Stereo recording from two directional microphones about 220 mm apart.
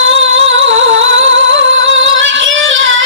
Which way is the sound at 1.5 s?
60° right (ahead or behind).